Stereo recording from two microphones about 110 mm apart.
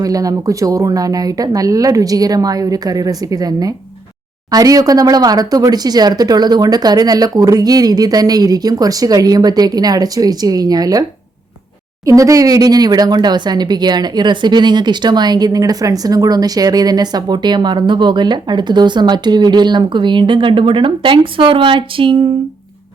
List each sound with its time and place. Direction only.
0.0 s speech: 35° right (ahead or behind)
12.0 s speech: 30° right (ahead or behind); by 22.3 s 50° right (ahead or behind)